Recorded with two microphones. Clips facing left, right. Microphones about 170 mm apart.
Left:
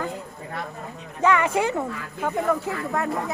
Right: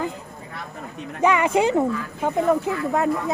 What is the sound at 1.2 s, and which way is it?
Speech, 15° right (ahead or behind).